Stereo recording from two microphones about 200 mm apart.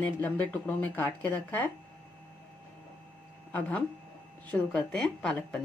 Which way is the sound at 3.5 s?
5° left (ahead or behind).